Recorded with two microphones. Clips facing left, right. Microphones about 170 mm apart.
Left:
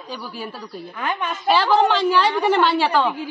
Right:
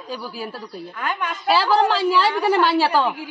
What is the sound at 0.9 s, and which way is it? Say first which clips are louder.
Speech: left 1 dB; 20° left (ahead or behind).